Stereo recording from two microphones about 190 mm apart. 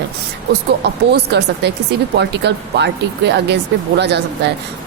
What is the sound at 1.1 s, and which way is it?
Speech, 60° right (ahead or behind).